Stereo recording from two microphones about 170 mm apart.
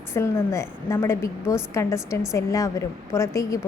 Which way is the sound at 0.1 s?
15° left (ahead or behind).